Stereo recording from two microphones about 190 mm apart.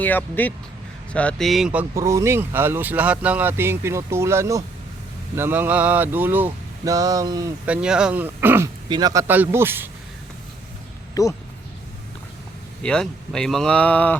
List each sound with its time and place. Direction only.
0.0 s speech: 10° left (ahead or behind); by 7.5 s 20° right (ahead or behind)
7.6 s speech: 5° right (ahead or behind)
11.1 s speech: 15° left (ahead or behind)
12.8 s speech: 5° left (ahead or behind)